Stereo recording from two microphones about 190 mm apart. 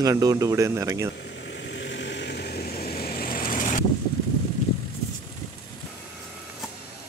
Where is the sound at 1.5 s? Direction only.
70° left (ahead or behind); by 3.8 s 45° left (ahead or behind).